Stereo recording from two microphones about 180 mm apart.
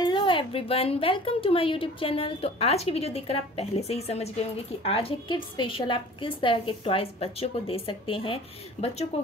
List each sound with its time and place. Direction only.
0.0 s speech: 25° left (ahead or behind)